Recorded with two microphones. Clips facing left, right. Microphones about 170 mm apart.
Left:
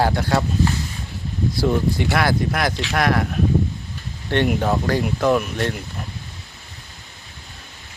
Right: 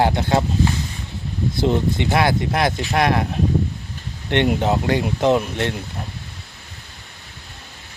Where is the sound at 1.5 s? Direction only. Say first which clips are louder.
Right 1 dB; 20° right (ahead or behind).